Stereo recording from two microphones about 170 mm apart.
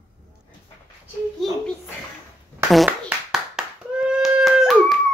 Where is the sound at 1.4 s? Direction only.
Centre (ahead or behind).